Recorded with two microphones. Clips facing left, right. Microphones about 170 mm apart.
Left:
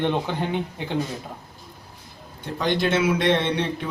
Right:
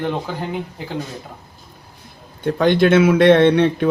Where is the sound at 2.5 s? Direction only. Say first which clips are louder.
Right 8 dB; 55° right (ahead or behind).